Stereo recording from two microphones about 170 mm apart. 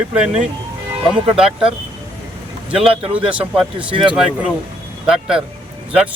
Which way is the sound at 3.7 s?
30° right (ahead or behind).